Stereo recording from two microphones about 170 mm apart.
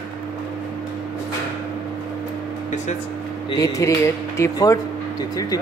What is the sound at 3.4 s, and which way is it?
Speech, 20° left (ahead or behind).